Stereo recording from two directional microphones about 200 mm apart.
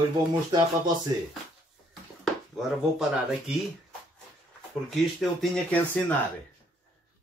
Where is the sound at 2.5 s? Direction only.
5° right (ahead or behind).